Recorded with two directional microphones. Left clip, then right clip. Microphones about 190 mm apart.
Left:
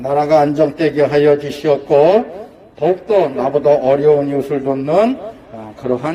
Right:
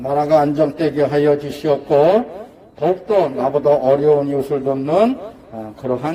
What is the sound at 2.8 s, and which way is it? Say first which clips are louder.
Speech: left 2 dB; 15° left (ahead or behind).